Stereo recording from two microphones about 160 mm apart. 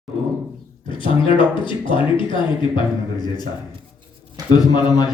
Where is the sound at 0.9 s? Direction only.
30° left (ahead or behind).